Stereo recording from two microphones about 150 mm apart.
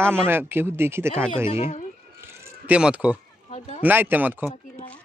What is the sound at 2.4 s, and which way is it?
Speech, 10° right (ahead or behind).